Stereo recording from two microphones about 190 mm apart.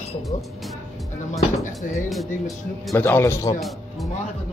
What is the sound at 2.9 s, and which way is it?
Speech, 10° left (ahead or behind).